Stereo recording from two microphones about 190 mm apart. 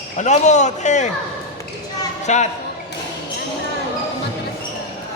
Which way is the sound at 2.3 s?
40° left (ahead or behind).